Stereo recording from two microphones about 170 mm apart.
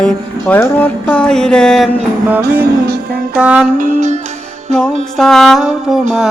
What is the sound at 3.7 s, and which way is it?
Music, 45° right (ahead or behind).